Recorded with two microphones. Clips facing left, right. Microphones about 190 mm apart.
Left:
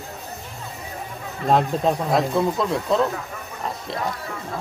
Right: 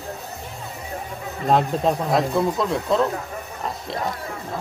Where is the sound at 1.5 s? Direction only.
Centre (ahead or behind).